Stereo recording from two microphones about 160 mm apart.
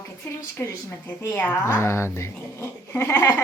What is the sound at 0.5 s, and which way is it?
A woman's voice, 15° left (ahead or behind).